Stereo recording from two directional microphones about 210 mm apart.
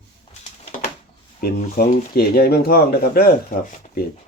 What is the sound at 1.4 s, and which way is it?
Speech, 45° left (ahead or behind).